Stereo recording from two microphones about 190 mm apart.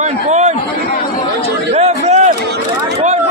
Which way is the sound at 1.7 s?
35° right (ahead or behind).